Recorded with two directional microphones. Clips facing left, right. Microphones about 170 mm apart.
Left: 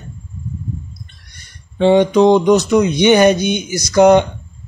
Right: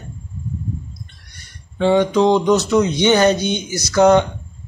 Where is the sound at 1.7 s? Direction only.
20° left (ahead or behind).